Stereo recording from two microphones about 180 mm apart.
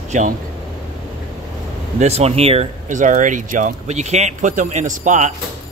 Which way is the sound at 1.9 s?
35° right (ahead or behind).